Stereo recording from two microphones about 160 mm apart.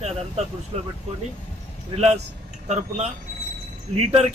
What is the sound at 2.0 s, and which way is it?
A man's voice, 45° right (ahead or behind).